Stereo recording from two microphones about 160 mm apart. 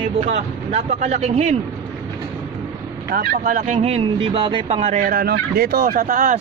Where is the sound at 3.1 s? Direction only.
70° right (ahead or behind).